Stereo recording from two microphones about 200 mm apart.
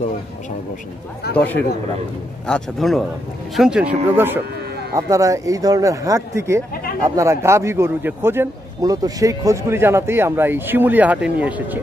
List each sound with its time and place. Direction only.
1.3 s a man's voice: 10° left (ahead or behind); by 6.6 s 15° right (ahead or behind)
6.7 s a sound: 50° left (ahead or behind)
7.0 s a man's voice: 15° right (ahead or behind)